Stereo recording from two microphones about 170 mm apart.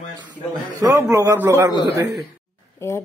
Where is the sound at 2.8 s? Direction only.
15° left (ahead or behind).